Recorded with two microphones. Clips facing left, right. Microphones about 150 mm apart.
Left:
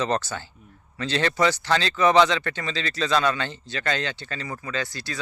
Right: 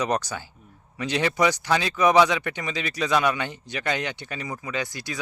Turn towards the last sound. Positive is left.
turn(degrees=-15)  # may be behind; listen again after turning